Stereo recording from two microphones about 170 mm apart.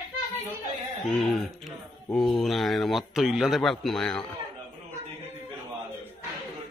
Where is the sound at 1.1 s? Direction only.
Centre (ahead or behind).